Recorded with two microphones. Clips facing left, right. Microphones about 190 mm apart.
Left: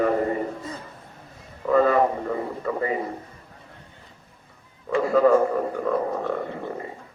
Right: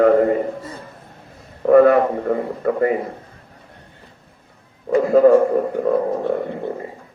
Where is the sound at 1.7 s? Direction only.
65° right (ahead or behind).